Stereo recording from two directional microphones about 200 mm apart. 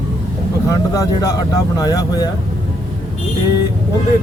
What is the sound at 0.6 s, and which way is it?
Speech, 15° left (ahead or behind).